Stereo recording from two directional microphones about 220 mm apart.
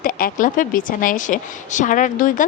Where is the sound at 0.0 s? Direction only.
40° left (ahead or behind).